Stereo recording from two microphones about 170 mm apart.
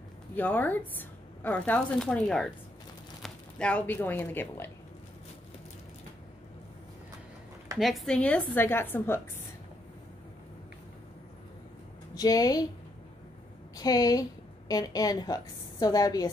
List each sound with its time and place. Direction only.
0.4 s speech: 10° left (ahead or behind)
7.7 s speech: centre (ahead or behind)
12.2 s a woman's voice: 20° left (ahead or behind)
13.7 s a woman's voice: 20° left (ahead or behind)